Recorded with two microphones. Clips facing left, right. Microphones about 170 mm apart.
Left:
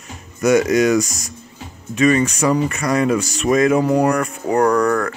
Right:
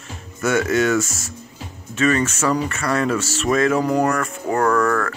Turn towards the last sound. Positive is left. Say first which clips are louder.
# left 2 dB
turn(degrees=15)  # may be behind; listen again after turning